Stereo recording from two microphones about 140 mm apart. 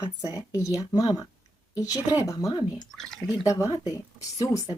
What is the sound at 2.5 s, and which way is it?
Speech, 35° left (ahead or behind).